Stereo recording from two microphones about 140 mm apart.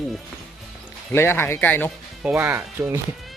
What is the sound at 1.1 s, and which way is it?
Speech, 15° left (ahead or behind).